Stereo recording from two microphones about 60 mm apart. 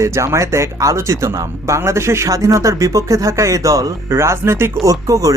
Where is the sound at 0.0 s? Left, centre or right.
Right.